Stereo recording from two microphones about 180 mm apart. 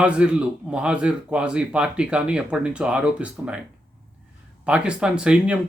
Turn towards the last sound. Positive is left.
turn(degrees=-5)  # may be behind; listen again after turning